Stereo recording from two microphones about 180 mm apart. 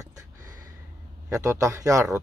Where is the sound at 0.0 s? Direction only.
20° right (ahead or behind).